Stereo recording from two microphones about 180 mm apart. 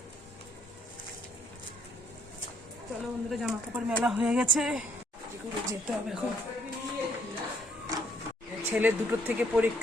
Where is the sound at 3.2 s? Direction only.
Centre (ahead or behind).